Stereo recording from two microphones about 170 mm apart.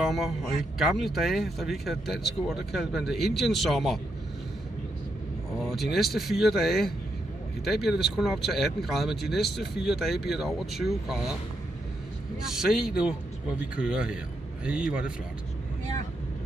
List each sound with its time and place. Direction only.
0.0 s speech: centre (ahead or behind)
5.6 s speech: centre (ahead or behind)
12.4 s a man's voice: 5° right (ahead or behind)